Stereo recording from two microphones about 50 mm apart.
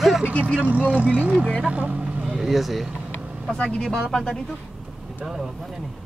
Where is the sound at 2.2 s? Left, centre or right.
Centre.